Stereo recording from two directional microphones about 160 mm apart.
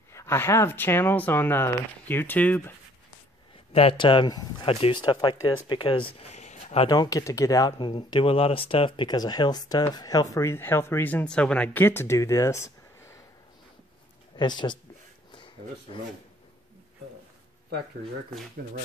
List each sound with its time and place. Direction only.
0.1 s speech: 15° left (ahead or behind)
3.7 s speech: 35° left (ahead or behind)
6.9 s speech: 25° left (ahead or behind)
14.3 s speech: 25° left (ahead or behind)
15.3 s a sound: 30° left (ahead or behind)